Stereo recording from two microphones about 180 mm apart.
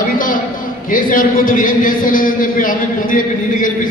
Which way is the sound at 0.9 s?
50° left (ahead or behind).